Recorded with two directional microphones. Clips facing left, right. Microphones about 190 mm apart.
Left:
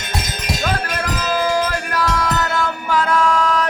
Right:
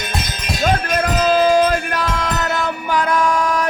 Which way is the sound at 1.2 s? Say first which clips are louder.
Right 6 dB; 25° right (ahead or behind).